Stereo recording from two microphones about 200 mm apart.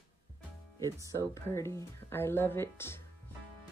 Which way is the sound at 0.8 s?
15° right (ahead or behind).